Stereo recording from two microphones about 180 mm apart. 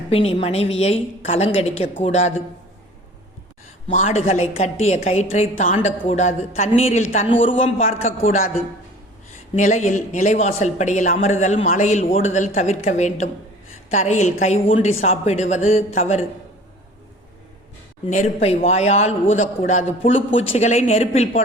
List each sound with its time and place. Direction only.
0.1 s speech: 30° left (ahead or behind)
3.9 s speech: 35° left (ahead or behind)
9.6 s speech: 40° left (ahead or behind)
18.0 s speech: 40° left (ahead or behind)